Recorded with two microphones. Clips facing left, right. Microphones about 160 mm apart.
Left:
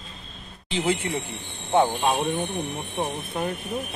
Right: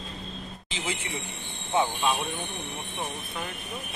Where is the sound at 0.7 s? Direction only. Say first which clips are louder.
Left 10 dB; 55° left (ahead or behind).